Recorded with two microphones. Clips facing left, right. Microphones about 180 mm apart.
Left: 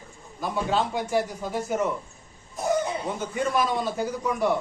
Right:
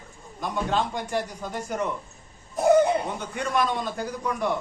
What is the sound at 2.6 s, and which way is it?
Cough, 60° right (ahead or behind).